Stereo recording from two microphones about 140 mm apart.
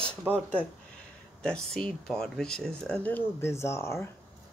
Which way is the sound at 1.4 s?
5° left (ahead or behind).